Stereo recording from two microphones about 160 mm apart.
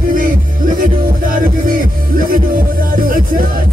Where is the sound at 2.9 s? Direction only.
60° right (ahead or behind).